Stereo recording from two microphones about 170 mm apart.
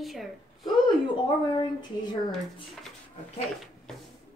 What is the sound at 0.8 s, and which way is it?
Speech, 25° left (ahead or behind).